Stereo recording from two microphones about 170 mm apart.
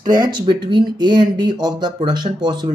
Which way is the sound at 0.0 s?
25° right (ahead or behind).